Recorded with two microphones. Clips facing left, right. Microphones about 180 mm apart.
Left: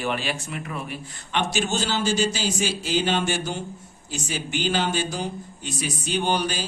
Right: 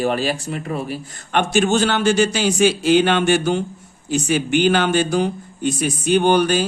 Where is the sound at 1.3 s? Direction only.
55° right (ahead or behind).